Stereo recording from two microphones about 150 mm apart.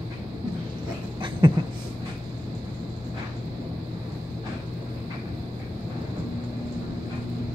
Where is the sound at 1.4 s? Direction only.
30° right (ahead or behind).